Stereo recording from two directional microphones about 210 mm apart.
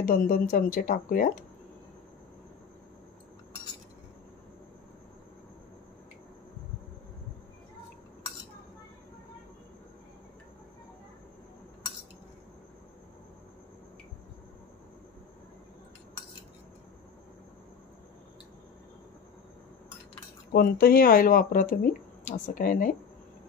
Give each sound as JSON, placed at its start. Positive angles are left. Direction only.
{"t": 0.0, "sound": "speech", "side_deg": 45}
{"t": 20.5, "sound": "speech", "side_deg": 45}